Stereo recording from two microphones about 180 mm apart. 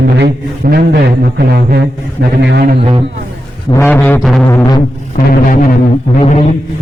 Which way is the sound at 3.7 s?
15° left (ahead or behind).